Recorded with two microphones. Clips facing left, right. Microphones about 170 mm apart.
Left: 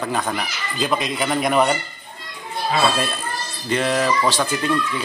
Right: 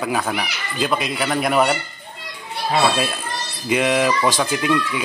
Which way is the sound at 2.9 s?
5° right (ahead or behind).